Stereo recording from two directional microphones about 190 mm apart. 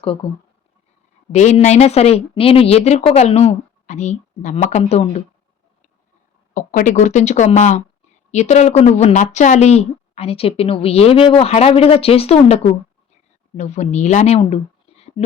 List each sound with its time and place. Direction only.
0.0 s speech: 30° left (ahead or behind)
1.3 s a woman's voice: 35° left (ahead or behind)
6.5 s a woman's voice: 45° left (ahead or behind)
13.6 s speech: 35° left (ahead or behind)